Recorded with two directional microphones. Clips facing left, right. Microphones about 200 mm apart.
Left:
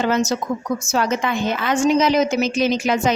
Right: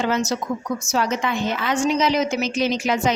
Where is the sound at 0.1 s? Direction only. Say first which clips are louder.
Left 3 dB; 45° left (ahead or behind).